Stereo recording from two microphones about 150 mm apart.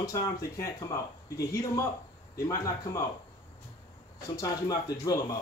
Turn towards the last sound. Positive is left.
turn(degrees=25)  # may be behind; listen again after turning